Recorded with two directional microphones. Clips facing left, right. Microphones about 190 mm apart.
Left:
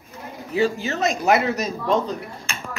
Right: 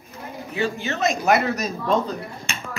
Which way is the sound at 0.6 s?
35° left (ahead or behind).